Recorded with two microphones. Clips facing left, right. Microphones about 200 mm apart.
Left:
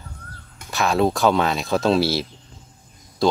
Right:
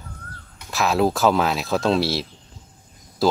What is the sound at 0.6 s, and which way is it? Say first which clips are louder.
Speech: even; centre (ahead or behind).